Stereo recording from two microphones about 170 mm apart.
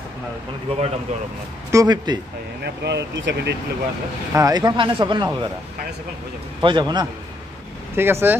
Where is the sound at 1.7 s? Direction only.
25° right (ahead or behind).